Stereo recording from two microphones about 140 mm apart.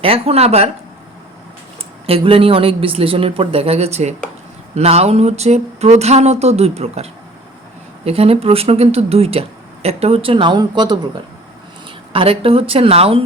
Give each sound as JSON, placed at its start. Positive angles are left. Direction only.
{"t": 0.0, "sound": "speech", "side_deg": -45}
{"t": 2.0, "sound": "a woman's voice", "side_deg": -40}
{"t": 12.1, "sound": "speech", "side_deg": -40}